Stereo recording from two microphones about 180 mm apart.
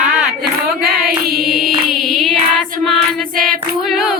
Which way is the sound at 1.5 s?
Centre (ahead or behind).